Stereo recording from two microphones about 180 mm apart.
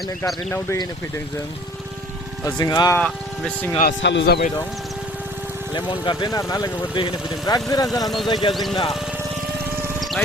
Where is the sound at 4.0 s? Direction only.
80° left.